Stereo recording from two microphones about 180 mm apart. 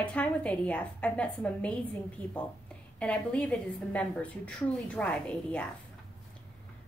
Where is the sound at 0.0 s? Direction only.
5° left (ahead or behind).